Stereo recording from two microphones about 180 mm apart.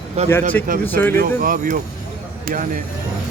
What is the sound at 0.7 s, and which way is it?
Speech, 50° right (ahead or behind).